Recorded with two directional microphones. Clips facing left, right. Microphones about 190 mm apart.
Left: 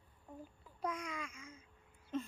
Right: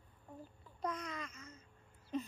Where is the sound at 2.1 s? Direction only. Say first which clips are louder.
Even; centre (ahead or behind).